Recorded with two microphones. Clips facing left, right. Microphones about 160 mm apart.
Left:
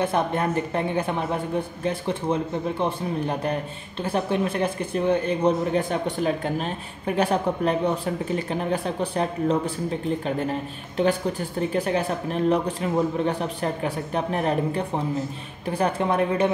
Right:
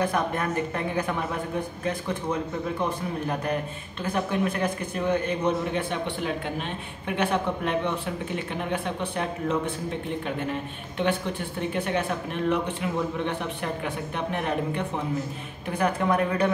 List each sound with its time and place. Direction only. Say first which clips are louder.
0.0 s a man's voice: left 3 dB; 25° left (ahead or behind)
11.7 s a man's voice: left 2 dB; 35° left (ahead or behind)